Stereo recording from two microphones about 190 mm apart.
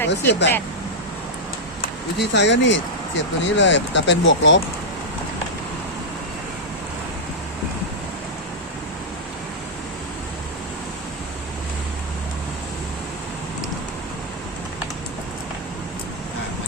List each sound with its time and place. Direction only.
0.3 s speech: 65° left (ahead or behind)
2.1 s speech: 70° left (ahead or behind)